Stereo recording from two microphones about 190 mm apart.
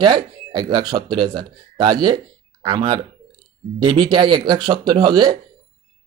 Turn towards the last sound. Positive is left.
turn(degrees=-25)  # may be behind; listen again after turning